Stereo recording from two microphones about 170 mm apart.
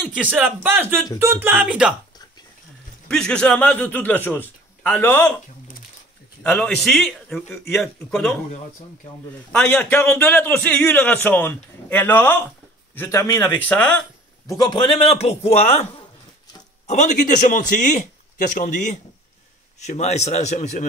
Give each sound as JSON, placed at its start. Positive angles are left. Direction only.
{"t": 0.0, "sound": "speech", "side_deg": -10}
{"t": 3.1, "sound": "a man's voice", "side_deg": 5}
{"t": 6.4, "sound": "a man's voice", "side_deg": 5}
{"t": 9.5, "sound": "a man's voice", "side_deg": 10}
{"t": 14.6, "sound": "a man's voice", "side_deg": 25}